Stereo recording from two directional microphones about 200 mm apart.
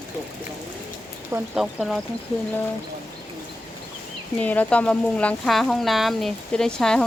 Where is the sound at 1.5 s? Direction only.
Centre (ahead or behind).